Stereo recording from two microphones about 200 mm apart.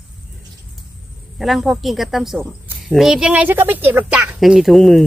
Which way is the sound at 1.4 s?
Centre (ahead or behind).